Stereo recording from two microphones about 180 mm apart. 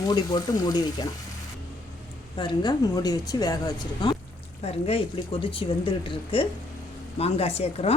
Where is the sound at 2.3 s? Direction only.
25° left (ahead or behind).